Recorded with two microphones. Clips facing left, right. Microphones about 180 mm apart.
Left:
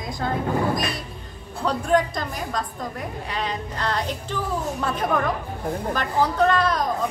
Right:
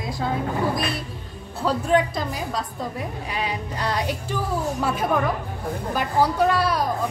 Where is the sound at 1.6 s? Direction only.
5° right (ahead or behind).